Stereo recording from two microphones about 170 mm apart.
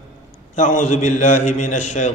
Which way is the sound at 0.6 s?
45° left (ahead or behind).